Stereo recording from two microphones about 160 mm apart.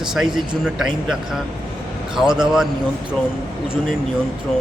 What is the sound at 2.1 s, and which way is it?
Speech, 5° right (ahead or behind).